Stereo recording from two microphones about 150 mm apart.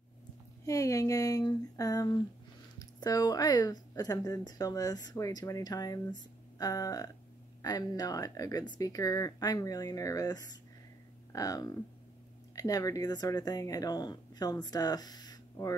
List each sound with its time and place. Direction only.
0.7 s a woman's voice: 20° left (ahead or behind)